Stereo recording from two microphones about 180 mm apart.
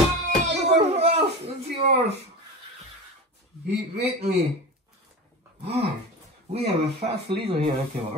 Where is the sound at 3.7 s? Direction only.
35° right (ahead or behind).